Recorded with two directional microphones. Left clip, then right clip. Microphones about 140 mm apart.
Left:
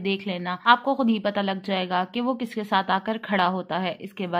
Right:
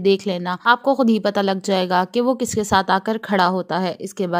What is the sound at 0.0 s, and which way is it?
A woman's voice, 75° right (ahead or behind).